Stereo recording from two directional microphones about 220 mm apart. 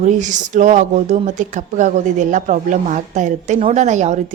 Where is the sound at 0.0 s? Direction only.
35° right (ahead or behind).